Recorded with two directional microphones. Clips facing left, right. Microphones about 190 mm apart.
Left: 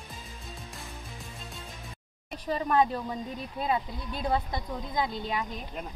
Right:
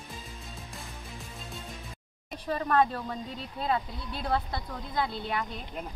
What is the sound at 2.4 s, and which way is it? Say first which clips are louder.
Speech: even; 10° left (ahead or behind).